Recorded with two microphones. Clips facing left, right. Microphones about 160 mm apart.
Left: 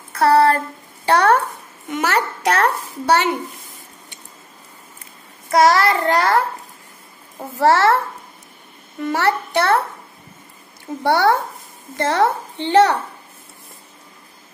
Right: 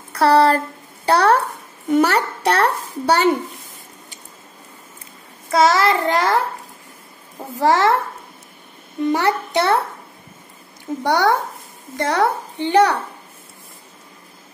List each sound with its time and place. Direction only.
0.1 s a sound: 30° right (ahead or behind)
1.0 s a child's voice: 35° right (ahead or behind)
5.7 s a woman's voice: 20° right (ahead or behind)
7.5 s a woman's voice: 15° right (ahead or behind)
9.0 s a woman's voice: 20° right (ahead or behind)
11.1 s a woman's voice: 15° right (ahead or behind)